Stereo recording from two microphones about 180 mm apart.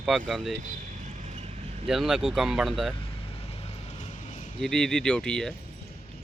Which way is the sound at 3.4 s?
35° left (ahead or behind).